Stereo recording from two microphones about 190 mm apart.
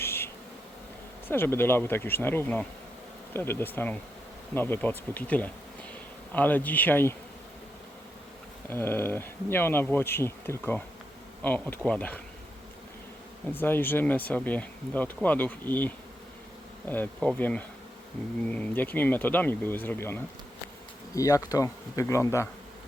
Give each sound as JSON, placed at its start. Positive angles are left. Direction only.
{"t": 0.0, "sound": "a sound", "side_deg": 10}
{"t": 1.3, "sound": "speech", "side_deg": 10}
{"t": 8.7, "sound": "speech", "side_deg": 10}
{"t": 13.5, "sound": "speech", "side_deg": 10}